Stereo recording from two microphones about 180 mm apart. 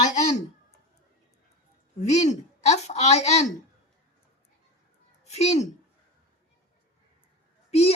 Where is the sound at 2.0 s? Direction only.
40° left (ahead or behind).